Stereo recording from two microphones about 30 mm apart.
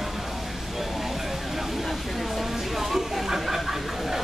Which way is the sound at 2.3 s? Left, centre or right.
Centre.